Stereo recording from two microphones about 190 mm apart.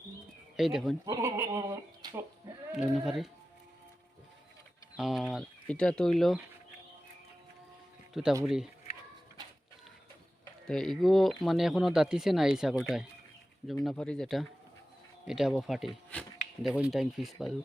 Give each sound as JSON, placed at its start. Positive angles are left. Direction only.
{"t": 0.5, "sound": "speech", "side_deg": 0}
{"t": 1.0, "sound": "speech", "side_deg": -15}
{"t": 2.7, "sound": "speech", "side_deg": 0}
{"t": 4.9, "sound": "speech", "side_deg": 0}
{"t": 8.1, "sound": "speech", "side_deg": 0}
{"t": 10.7, "sound": "speech", "side_deg": 0}
{"t": 13.8, "sound": "speech", "side_deg": 5}